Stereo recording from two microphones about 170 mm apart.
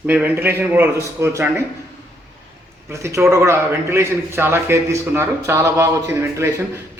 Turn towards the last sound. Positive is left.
turn(degrees=-15)  # may be behind; listen again after turning